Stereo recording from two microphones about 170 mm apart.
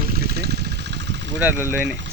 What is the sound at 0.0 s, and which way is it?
Vehicle, 65° right (ahead or behind).